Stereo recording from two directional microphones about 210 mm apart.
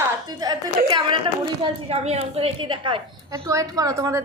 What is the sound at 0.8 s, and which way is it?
A woman's voice, 20° right (ahead or behind).